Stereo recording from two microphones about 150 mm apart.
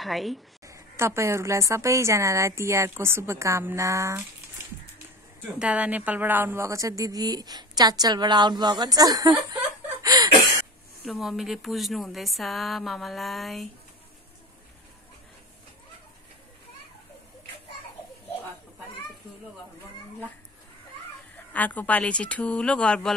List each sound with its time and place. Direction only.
0.0 s speech: centre (ahead or behind)
0.7 s a woman's voice: 20° right (ahead or behind)
5.4 s a woman's voice: 10° right (ahead or behind); by 9.6 s 25° right (ahead or behind)
10.0 s a sound: 25° right (ahead or behind)
11.1 s speech: centre (ahead or behind)
21.5 s speech: 10° left (ahead or behind)